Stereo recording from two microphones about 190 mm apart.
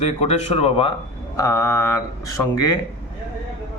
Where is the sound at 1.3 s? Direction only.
15° left (ahead or behind).